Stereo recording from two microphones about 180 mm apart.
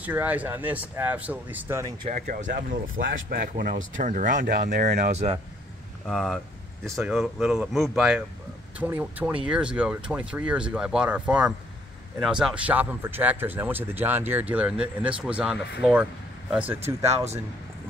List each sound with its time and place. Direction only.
0.0 s speech: 10° right (ahead or behind)
2.0 s speech: 45° right (ahead or behind)
3.1 s speech: 75° right (ahead or behind)
4.0 s speech: 45° right (ahead or behind)
4.5 s speech: 65° right (ahead or behind)
4.9 s speech: 40° right (ahead or behind)
6.0 s speech: centre (ahead or behind)
17.0 s speech: 35° right (ahead or behind)